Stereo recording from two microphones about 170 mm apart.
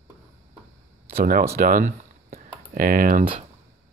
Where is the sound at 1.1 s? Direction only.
55° right (ahead or behind).